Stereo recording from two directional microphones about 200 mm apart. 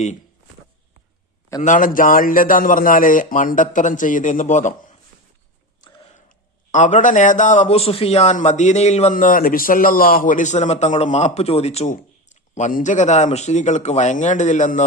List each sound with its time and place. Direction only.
1.6 s a man's voice: 40° left (ahead or behind)
6.2 s a man's voice: 40° left (ahead or behind)